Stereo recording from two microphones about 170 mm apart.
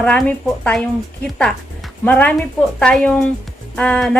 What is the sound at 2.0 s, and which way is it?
A woman's voice, 10° left (ahead or behind).